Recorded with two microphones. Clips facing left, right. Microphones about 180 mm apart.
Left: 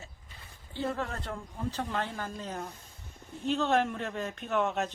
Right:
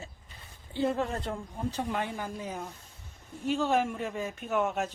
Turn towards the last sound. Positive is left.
turn(degrees=-5)  # may be behind; listen again after turning